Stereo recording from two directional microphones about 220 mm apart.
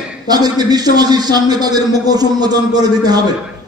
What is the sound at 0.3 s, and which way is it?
A man's voice, 20° right (ahead or behind).